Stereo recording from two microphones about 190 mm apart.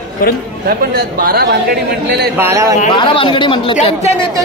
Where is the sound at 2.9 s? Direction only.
25° left (ahead or behind).